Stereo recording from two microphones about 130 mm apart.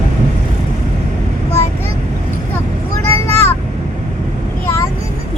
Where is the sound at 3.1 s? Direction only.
20° left (ahead or behind).